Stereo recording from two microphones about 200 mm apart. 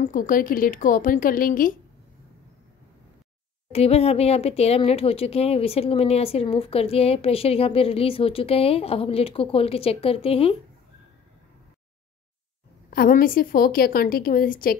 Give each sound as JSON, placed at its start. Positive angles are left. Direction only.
{"t": 0.0, "sound": "a woman's voice", "side_deg": 40}
{"t": 3.7, "sound": "speech", "side_deg": 30}
{"t": 12.9, "sound": "a woman's voice", "side_deg": 45}